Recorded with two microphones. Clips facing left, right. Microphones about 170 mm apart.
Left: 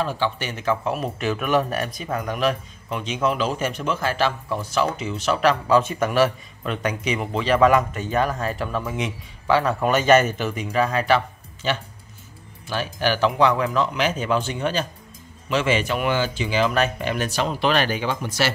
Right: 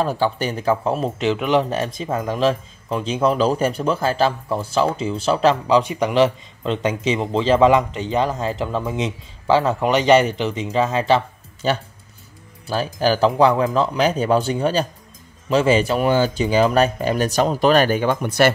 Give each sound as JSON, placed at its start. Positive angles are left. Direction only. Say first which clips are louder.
{"t": 0.0, "sound": "speech", "louder": "right 4 dB", "side_deg": -40}
{"t": 5.8, "sound": "speech", "louder": "right 3 dB", "side_deg": -15}